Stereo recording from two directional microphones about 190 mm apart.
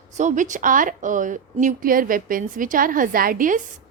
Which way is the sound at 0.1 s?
40° right (ahead or behind).